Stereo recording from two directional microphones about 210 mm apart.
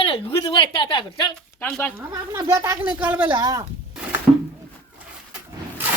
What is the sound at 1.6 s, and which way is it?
Speech, 5° left (ahead or behind).